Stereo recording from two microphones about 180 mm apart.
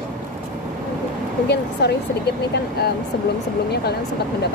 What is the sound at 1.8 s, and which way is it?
Speech, 70° left (ahead or behind).